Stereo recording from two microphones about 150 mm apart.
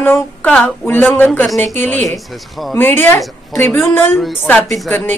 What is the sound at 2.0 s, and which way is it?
Speech, centre (ahead or behind).